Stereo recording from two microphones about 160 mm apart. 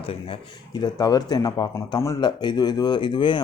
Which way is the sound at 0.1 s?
30° left (ahead or behind).